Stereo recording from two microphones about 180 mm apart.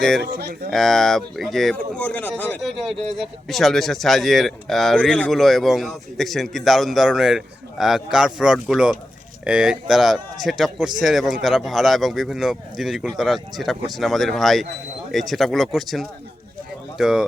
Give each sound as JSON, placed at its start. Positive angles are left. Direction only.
{"t": 0.2, "sound": "speech", "side_deg": -60}
{"t": 0.7, "sound": "speech", "side_deg": 0}